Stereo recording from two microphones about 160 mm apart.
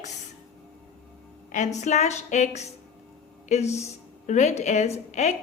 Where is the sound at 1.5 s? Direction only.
50° left (ahead or behind).